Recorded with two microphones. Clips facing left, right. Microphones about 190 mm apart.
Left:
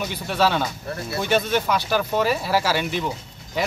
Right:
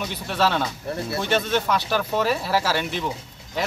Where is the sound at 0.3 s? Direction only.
Centre (ahead or behind).